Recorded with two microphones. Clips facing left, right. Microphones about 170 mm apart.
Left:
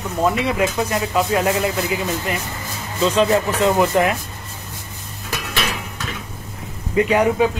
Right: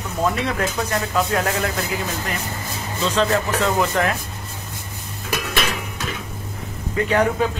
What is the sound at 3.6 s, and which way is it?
Speech, 10° left (ahead or behind).